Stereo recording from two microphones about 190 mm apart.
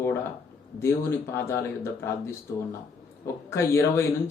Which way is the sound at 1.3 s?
10° left (ahead or behind).